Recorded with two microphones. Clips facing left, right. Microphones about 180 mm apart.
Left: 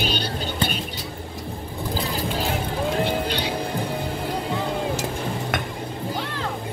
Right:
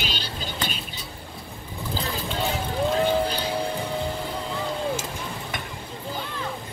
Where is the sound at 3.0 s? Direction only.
80° left.